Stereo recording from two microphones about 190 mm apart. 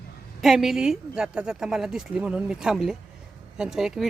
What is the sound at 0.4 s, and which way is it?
Speech, centre (ahead or behind).